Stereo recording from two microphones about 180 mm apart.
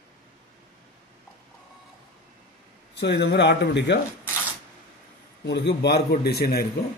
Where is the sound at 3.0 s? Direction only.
70° left (ahead or behind).